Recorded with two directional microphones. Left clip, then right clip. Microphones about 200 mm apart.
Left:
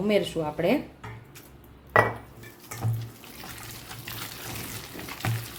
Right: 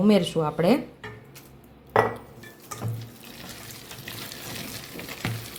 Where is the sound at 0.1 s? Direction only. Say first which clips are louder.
Left 1 dB; 30° right (ahead or behind).